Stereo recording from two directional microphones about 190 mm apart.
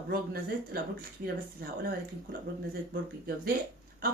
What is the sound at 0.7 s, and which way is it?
Speech, 50° right (ahead or behind).